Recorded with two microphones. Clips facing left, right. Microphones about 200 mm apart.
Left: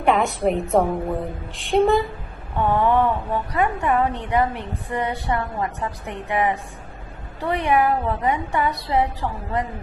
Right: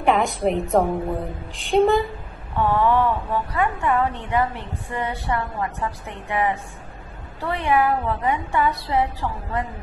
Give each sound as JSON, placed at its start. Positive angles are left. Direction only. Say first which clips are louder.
{"t": 0.0, "sound": "a woman's voice", "louder": "left 1 dB", "side_deg": 0}
{"t": 2.6, "sound": "a sound", "louder": "even", "side_deg": 20}
{"t": 3.5, "sound": "a woman's voice", "louder": "left 2 dB", "side_deg": 15}